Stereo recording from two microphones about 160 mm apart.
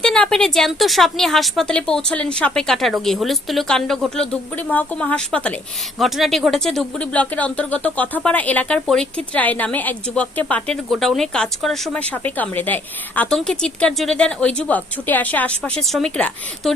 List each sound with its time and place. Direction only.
0.0 s a woman's voice: 5° left (ahead or behind)